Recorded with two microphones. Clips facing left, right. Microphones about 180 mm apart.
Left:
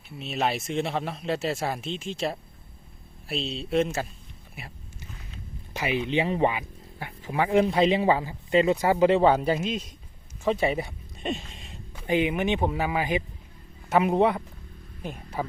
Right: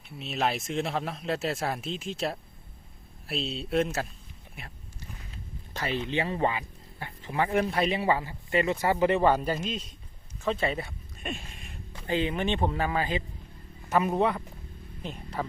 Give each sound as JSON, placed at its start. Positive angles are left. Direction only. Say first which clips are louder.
{"t": 0.2, "sound": "speech", "louder": "left 2 dB", "side_deg": 0}
{"t": 5.7, "sound": "speech", "louder": "left 4 dB", "side_deg": 10}